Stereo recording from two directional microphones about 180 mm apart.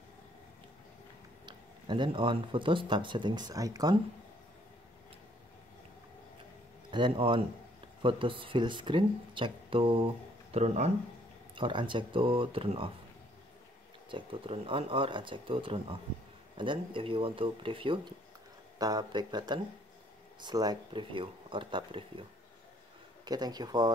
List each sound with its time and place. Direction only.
1.4 s speech: 25° right (ahead or behind)
6.9 s speech: 25° right (ahead or behind)
11.5 s speech: 25° right (ahead or behind)
14.1 s speech: 30° right (ahead or behind)
23.2 s speech: 20° right (ahead or behind)